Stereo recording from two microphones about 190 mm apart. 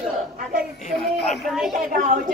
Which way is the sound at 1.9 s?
40° right (ahead or behind).